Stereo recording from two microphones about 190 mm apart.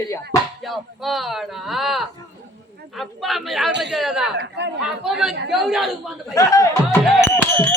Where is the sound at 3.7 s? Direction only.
65° right (ahead or behind).